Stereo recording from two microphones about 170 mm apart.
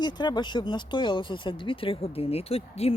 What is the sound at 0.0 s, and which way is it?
Speech, 25° left (ahead or behind).